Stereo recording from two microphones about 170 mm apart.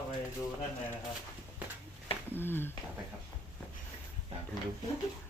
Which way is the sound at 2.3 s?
10° left (ahead or behind).